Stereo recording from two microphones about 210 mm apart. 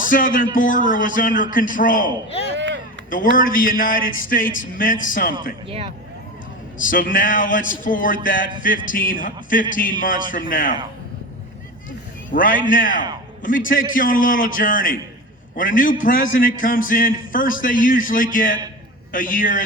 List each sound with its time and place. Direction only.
0.0 s a man's voice: 40° left (ahead or behind)
2.6 s a sound: 55° right (ahead or behind)
3.1 s a man's voice: 40° left (ahead or behind)
6.7 s a man's voice: 40° left (ahead or behind)
12.3 s a man's voice: 40° left (ahead or behind)